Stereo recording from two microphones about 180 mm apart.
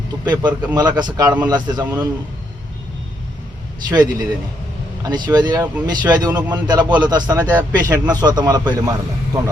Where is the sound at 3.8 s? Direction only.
20° right (ahead or behind).